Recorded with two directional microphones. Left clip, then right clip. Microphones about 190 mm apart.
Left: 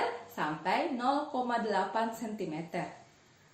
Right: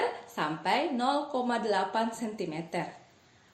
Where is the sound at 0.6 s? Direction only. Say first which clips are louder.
Right 2 dB; 40° right (ahead or behind).